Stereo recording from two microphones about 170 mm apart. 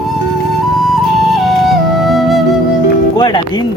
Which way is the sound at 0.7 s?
Centre (ahead or behind).